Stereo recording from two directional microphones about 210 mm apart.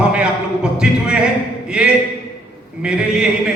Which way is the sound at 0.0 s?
5° right (ahead or behind).